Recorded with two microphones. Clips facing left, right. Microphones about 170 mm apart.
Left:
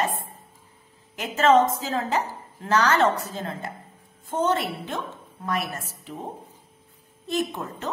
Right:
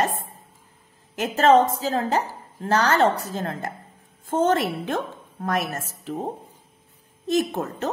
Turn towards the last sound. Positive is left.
turn(degrees=-45)  # may be behind; listen again after turning